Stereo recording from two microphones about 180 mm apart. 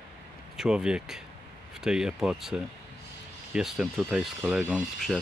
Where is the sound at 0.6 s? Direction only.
5° right (ahead or behind).